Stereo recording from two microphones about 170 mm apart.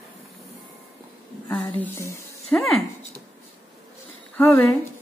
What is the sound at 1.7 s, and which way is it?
Speech, 15° left (ahead or behind).